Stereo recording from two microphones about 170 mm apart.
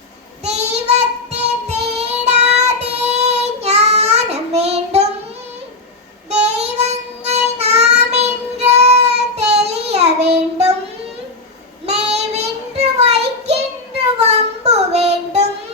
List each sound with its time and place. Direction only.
0.4 s child singing: 40° right (ahead or behind)
6.3 s child singing: 40° right (ahead or behind)
11.9 s child singing: 40° right (ahead or behind)